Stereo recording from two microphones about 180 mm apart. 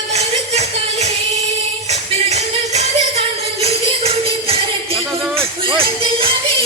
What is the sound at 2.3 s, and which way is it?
Music, 40° right (ahead or behind).